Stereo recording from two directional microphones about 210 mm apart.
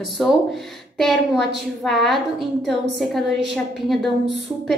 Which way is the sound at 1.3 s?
55° right (ahead or behind).